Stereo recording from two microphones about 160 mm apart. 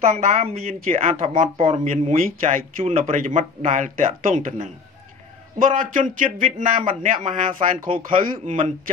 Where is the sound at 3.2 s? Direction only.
55° right (ahead or behind).